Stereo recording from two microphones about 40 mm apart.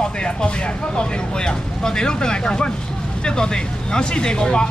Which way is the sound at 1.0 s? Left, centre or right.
Left.